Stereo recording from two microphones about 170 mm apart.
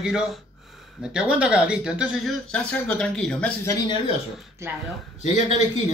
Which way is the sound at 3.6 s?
20° left (ahead or behind).